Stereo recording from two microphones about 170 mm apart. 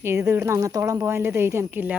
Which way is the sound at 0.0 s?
15° right (ahead or behind).